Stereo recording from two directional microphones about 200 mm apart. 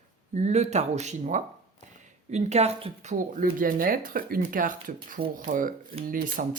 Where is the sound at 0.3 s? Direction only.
35° right (ahead or behind).